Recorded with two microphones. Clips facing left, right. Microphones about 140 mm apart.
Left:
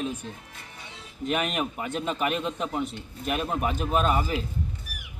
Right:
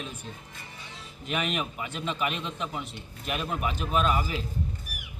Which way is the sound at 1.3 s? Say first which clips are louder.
Left 3 dB; 45° left (ahead or behind).